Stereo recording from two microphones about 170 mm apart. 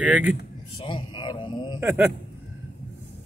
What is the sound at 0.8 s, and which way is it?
Speech, 25° left (ahead or behind).